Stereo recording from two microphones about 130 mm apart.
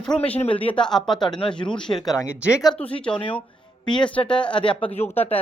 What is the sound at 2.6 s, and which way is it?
Speech, 5° left (ahead or behind).